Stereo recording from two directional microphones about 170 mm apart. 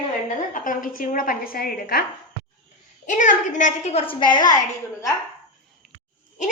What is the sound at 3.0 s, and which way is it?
A woman's voice, 50° left (ahead or behind).